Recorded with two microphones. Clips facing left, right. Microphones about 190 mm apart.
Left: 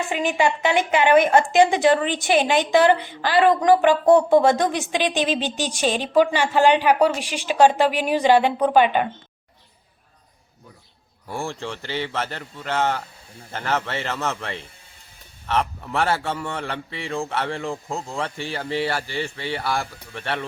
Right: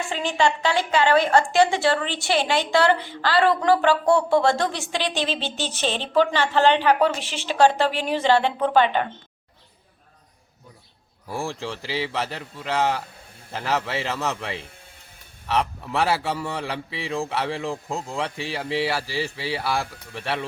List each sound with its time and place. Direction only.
0.1 s a woman's voice: 15° left (ahead or behind)
11.3 s a man's voice: centre (ahead or behind)